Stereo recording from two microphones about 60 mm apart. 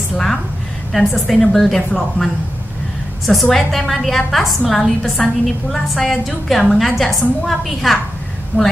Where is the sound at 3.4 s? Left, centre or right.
Centre.